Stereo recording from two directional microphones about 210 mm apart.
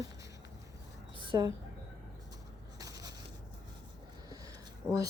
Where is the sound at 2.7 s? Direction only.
15° right (ahead or behind).